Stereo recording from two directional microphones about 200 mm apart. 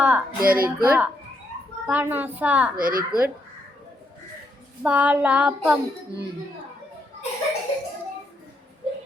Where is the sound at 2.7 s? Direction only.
45° right (ahead or behind).